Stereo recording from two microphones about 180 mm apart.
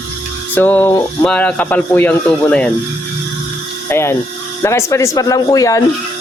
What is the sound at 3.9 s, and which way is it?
Speech, 15° left (ahead or behind).